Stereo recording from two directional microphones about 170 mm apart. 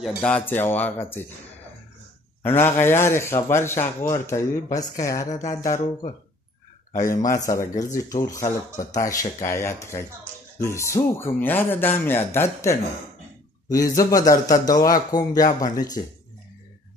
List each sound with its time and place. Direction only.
0.0 s speech: 5° left (ahead or behind)
2.4 s speech: 15° left (ahead or behind)
7.1 s speech: 20° left (ahead or behind)